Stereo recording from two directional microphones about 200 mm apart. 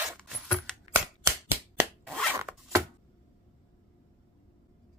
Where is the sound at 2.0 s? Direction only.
5° left (ahead or behind).